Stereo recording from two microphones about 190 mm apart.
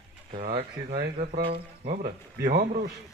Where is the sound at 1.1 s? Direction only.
45° right (ahead or behind).